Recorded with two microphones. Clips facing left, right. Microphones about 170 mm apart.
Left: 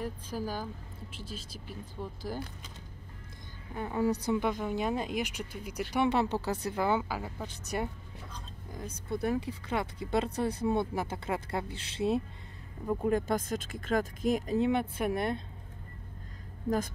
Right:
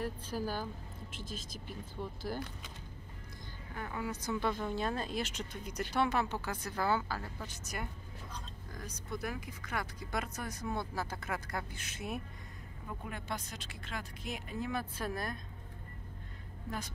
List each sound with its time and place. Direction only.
0.0 s speech: 10° left (ahead or behind)
1.2 s speech: 35° left (ahead or behind)
2.0 s speech: 10° left (ahead or behind)
3.7 s speech: 25° left (ahead or behind)
6.0 s speech: 30° left (ahead or behind)
6.6 s speech: 20° left (ahead or behind)
7.7 s speech: 30° left (ahead or behind)
12.8 s speech: 40° left (ahead or behind)
14.6 s speech: 25° left (ahead or behind)